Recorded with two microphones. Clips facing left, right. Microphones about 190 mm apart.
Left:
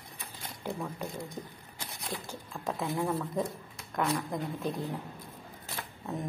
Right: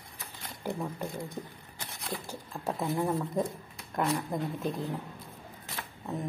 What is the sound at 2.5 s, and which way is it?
Speech, 20° right (ahead or behind).